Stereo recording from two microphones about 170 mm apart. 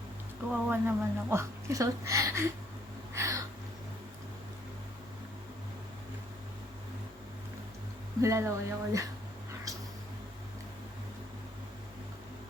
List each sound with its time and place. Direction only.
0.5 s speech: 10° right (ahead or behind)
3.2 s a sound: 20° right (ahead or behind)
8.2 s speech: 15° right (ahead or behind)